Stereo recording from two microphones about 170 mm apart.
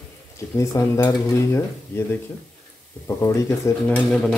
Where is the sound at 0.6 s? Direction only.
15° left (ahead or behind).